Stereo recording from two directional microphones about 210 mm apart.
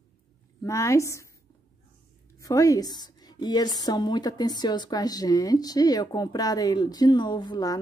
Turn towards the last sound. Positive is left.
turn(degrees=20)  # may be behind; listen again after turning